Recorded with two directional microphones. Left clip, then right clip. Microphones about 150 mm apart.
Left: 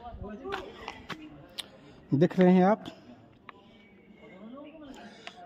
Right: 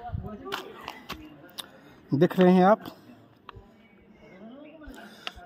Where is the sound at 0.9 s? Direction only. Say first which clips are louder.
Right 2 dB; 90° right.